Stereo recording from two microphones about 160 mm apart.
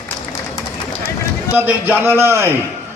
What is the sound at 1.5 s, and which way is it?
A man's voice, 10° right (ahead or behind).